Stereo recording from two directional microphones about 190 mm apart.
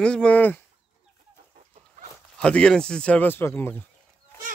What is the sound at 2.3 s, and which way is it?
Speech, 5° left (ahead or behind).